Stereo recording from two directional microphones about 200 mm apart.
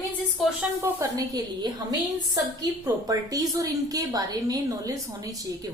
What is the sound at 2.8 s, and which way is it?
A woman's voice, 15° right (ahead or behind).